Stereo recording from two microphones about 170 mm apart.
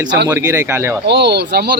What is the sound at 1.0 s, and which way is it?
Speech, 80° right.